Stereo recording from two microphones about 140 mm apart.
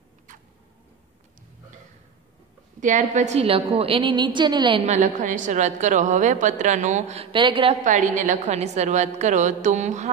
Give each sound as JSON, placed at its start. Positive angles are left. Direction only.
{"t": 0.3, "sound": "a sound", "side_deg": -70}
{"t": 2.8, "sound": "a woman's voice", "side_deg": -60}
{"t": 4.8, "sound": "a woman's voice", "side_deg": -60}
{"t": 7.3, "sound": "a woman's voice", "side_deg": -35}
{"t": 7.8, "sound": "a woman's voice", "side_deg": -65}